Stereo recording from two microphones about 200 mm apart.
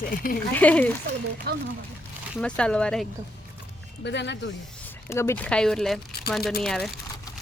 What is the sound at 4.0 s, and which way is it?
Speech, 60° left (ahead or behind).